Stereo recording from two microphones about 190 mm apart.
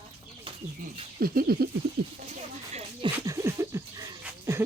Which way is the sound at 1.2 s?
50° right (ahead or behind).